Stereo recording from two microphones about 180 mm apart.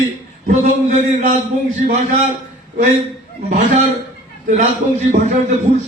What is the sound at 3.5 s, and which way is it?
A man's voice, 45° right (ahead or behind).